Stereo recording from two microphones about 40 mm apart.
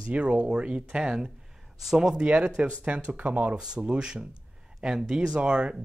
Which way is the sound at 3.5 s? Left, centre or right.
Right.